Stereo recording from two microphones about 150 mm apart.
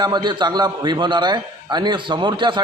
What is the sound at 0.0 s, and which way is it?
A man's voice, 30° right (ahead or behind).